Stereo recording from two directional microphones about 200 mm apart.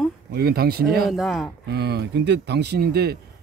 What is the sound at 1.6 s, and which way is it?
Speech, 55° right (ahead or behind).